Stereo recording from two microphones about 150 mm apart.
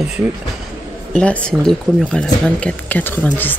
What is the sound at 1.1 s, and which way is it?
Speech, 10° left (ahead or behind).